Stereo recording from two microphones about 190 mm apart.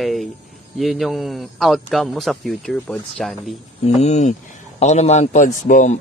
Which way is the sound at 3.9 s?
40° left (ahead or behind).